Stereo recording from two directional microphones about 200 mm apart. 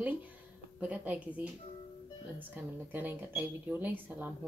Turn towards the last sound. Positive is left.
turn(degrees=-10)  # may be behind; listen again after turning